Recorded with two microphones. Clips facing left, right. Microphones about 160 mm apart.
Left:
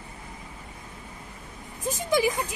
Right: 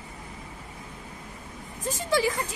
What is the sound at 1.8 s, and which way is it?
Speech, 15° left (ahead or behind).